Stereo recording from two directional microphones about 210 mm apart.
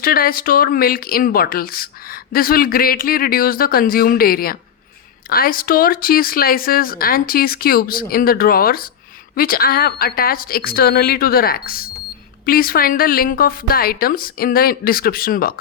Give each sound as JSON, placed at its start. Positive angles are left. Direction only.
{"t": 0.0, "sound": "speech", "side_deg": 45}